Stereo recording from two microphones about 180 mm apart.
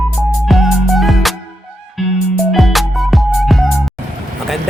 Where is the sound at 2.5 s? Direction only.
Centre (ahead or behind).